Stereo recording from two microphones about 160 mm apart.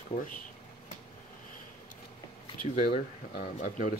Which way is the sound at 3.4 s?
55° left (ahead or behind).